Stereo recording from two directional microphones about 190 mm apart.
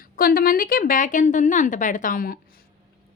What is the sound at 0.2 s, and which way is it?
A woman's voice, 50° left (ahead or behind).